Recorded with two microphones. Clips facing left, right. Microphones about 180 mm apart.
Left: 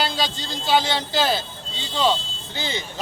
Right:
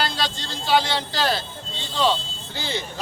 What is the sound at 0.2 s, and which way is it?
Speech, 5° left (ahead or behind).